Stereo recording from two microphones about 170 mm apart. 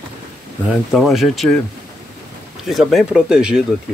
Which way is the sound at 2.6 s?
Centre (ahead or behind).